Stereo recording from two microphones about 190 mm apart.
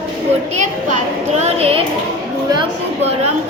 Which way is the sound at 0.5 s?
40° right (ahead or behind).